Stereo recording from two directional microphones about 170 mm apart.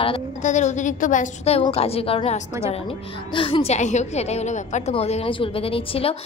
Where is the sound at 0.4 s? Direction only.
45° left (ahead or behind).